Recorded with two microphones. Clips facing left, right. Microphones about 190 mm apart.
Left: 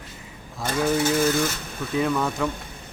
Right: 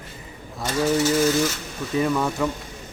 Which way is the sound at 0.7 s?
55° left (ahead or behind).